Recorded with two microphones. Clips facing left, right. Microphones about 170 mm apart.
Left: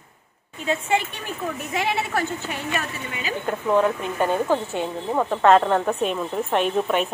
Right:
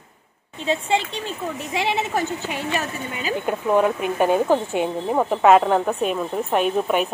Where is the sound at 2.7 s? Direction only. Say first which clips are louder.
Right 2 dB; 40° right (ahead or behind).